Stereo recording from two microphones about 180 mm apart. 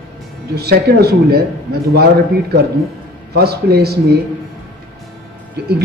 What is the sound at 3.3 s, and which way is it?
Speech, 60° right (ahead or behind).